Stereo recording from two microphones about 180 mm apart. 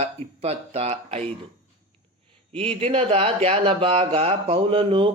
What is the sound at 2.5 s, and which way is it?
Speech, 30° right (ahead or behind).